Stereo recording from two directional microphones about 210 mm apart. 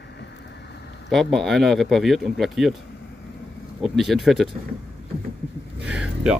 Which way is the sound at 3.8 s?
Centre (ahead or behind).